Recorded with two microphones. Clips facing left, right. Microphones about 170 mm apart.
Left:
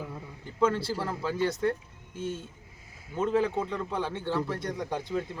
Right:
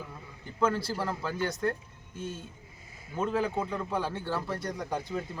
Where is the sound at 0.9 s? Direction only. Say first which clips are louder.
Left 2 dB; 30° left (ahead or behind).